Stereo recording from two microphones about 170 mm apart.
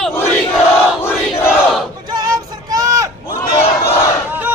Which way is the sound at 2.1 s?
25° right (ahead or behind).